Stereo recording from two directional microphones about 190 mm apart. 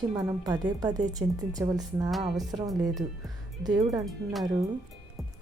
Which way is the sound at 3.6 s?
20° right (ahead or behind).